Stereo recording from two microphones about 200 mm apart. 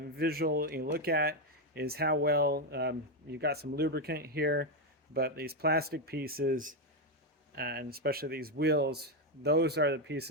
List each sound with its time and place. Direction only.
0.2 s speech: 50° right (ahead or behind)